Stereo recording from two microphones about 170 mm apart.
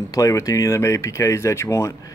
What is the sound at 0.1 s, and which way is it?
Speech, 20° left (ahead or behind).